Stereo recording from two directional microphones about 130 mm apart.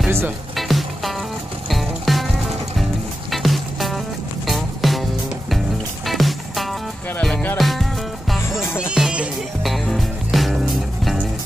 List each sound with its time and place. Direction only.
0.6 s music: centre (ahead or behind)
3.3 s music: centre (ahead or behind)
6.0 s music: centre (ahead or behind)